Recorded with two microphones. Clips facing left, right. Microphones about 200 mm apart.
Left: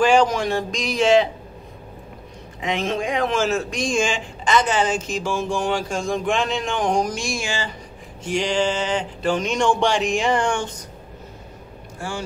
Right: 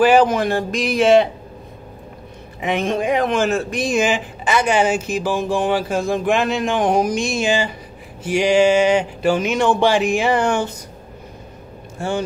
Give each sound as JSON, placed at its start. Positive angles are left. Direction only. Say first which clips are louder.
{"t": 0.0, "sound": "speech", "louder": "right 3 dB", "side_deg": -5}
{"t": 2.6, "sound": "speech", "louder": "right 4 dB", "side_deg": 0}
{"t": 7.2, "sound": "speech", "louder": "right 8 dB", "side_deg": -20}
{"t": 12.0, "sound": "speech", "louder": "right 7 dB", "side_deg": -25}